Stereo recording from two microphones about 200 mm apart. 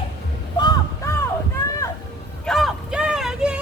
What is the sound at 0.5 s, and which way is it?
Honk, 20° left (ahead or behind).